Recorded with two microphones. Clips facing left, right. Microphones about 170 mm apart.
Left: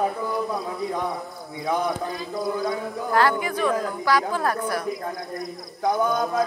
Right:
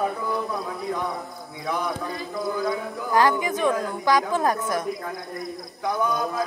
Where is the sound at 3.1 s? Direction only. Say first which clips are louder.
Right 1 dB; 15° right (ahead or behind).